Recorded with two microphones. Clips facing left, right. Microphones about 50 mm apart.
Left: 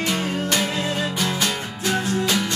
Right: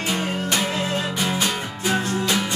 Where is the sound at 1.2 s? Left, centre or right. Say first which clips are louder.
Even; centre.